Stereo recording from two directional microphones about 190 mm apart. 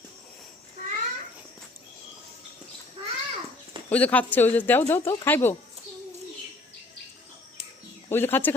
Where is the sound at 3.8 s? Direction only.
10° left (ahead or behind).